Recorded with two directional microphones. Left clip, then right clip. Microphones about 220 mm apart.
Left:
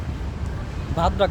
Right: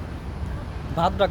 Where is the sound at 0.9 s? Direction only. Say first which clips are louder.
Left 1 dB; 5° left (ahead or behind).